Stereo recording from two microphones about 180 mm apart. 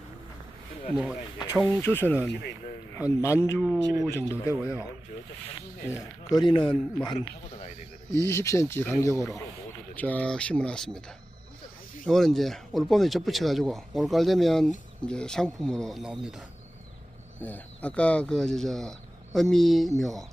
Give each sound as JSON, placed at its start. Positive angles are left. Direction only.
{"t": 0.9, "sound": "speech", "side_deg": -5}
{"t": 1.8, "sound": "speech", "side_deg": 10}
{"t": 5.9, "sound": "speech", "side_deg": 25}
{"t": 8.2, "sound": "speech", "side_deg": 15}
{"t": 12.0, "sound": "speech", "side_deg": 0}
{"t": 17.4, "sound": "speech", "side_deg": 10}